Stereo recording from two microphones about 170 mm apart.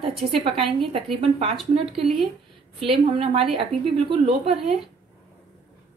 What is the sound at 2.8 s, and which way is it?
A woman's voice, 35° right (ahead or behind).